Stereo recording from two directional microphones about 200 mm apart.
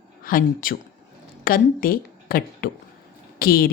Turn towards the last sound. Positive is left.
turn(degrees=45)  # may be behind; listen again after turning